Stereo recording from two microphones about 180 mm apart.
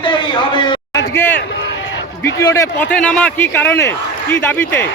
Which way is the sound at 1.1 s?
10° left (ahead or behind).